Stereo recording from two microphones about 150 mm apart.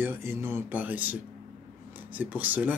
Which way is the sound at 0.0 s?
15° right (ahead or behind).